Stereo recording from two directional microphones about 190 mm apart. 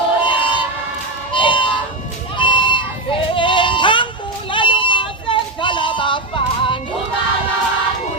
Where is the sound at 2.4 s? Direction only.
25° left (ahead or behind).